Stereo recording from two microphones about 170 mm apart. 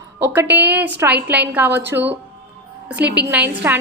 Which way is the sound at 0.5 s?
10° right (ahead or behind).